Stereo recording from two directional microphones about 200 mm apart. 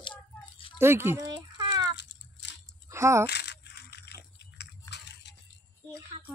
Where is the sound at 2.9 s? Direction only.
15° right (ahead or behind).